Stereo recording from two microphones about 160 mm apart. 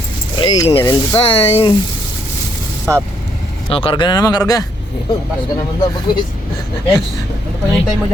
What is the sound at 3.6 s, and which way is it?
Speech, 35° left (ahead or behind).